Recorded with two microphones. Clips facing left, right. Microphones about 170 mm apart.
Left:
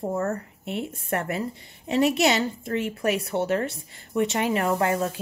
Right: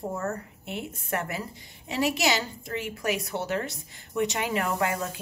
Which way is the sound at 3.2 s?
55° left (ahead or behind).